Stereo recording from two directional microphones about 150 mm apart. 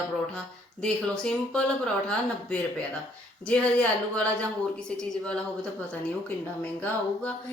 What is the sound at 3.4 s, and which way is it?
Speech, 10° left (ahead or behind).